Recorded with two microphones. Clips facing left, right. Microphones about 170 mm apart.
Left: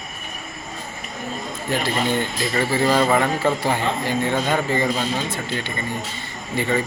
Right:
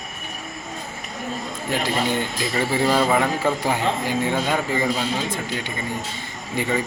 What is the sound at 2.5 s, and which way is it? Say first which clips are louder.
A man's voice: left 1 dB; 15° right (ahead or behind).